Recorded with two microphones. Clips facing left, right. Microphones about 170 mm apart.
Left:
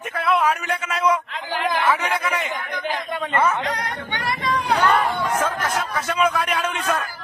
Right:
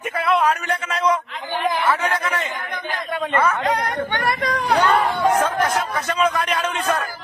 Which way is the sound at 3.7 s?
50° right (ahead or behind).